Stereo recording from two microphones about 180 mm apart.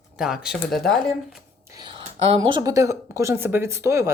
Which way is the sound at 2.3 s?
25° right (ahead or behind).